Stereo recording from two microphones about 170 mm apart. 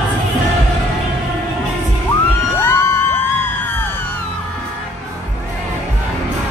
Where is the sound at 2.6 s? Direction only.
15° left (ahead or behind).